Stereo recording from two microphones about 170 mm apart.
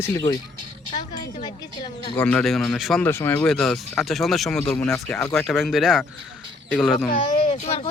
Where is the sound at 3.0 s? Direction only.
15° left (ahead or behind).